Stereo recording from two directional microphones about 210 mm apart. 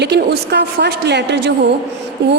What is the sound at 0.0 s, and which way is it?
A woman's voice, 55° right (ahead or behind).